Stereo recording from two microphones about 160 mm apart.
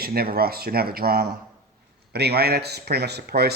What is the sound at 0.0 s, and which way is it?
Speech, 75° right (ahead or behind).